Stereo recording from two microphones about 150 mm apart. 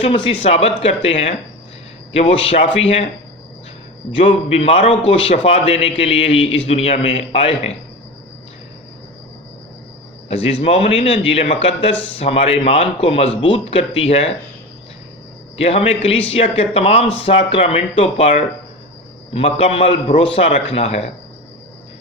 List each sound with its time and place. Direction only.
0.0 s speech: 35° left (ahead or behind)
2.1 s speech: 40° left (ahead or behind)
4.1 s speech: 35° left (ahead or behind)
10.2 s speech: 40° left (ahead or behind)
15.5 s speech: 40° left (ahead or behind)